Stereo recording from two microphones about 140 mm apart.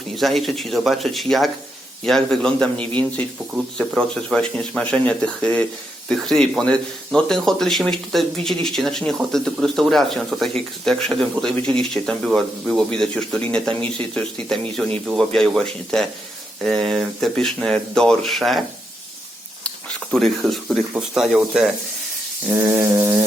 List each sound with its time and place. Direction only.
0.2 s speech: centre (ahead or behind)
19.6 s speech: 5° left (ahead or behind)
22.5 s a sound: 20° right (ahead or behind)